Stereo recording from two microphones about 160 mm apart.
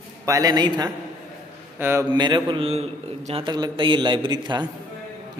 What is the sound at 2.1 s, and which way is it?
A man's voice, 30° right (ahead or behind).